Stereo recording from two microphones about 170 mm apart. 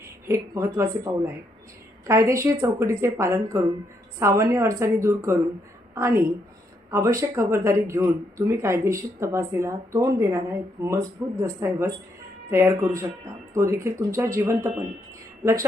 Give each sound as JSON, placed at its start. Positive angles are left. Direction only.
{"t": 0.3, "sound": "speech", "side_deg": -15}